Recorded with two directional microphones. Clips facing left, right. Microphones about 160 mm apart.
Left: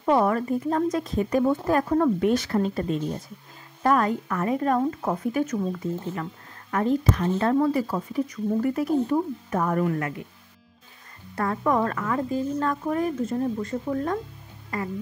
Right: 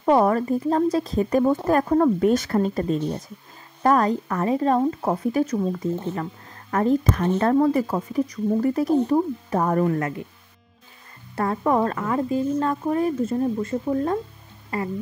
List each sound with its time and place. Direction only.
0.0 s speech: 40° right (ahead or behind)
11.3 s speech: 25° right (ahead or behind)